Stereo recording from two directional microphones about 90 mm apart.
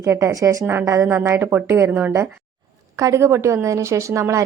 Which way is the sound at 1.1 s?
25° right (ahead or behind).